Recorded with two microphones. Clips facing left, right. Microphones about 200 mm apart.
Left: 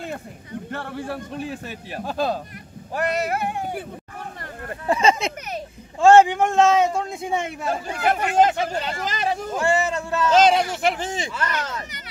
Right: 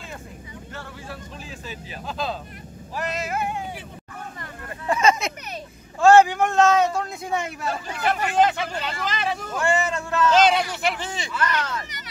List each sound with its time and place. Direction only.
0.0 s speech: 60° left (ahead or behind)
4.4 s a sound: 35° left (ahead or behind)
5.9 s a man's voice: 25° left (ahead or behind)
7.7 s speech: 50° left (ahead or behind)
9.9 s a man's voice: 20° left (ahead or behind)
10.3 s speech: 40° left (ahead or behind)